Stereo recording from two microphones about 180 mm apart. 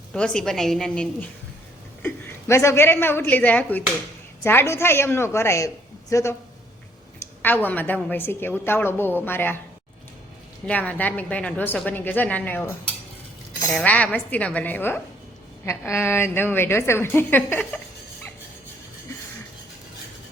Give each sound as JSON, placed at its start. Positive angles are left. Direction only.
{"t": 0.1, "sound": "a woman's voice", "side_deg": 5}
{"t": 10.7, "sound": "a woman's voice", "side_deg": 10}